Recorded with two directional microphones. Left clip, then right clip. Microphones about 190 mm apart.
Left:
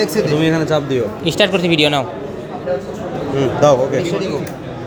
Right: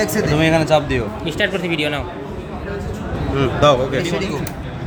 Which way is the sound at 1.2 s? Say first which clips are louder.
Left 7 dB; 25° left (ahead or behind).